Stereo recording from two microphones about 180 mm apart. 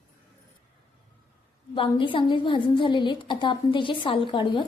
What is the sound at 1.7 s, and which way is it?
A woman's voice, 30° left (ahead or behind).